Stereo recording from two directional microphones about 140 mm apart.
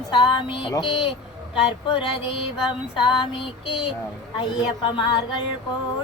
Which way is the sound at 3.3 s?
40° left (ahead or behind).